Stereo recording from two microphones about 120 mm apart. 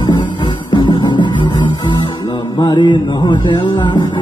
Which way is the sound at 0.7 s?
40° left (ahead or behind).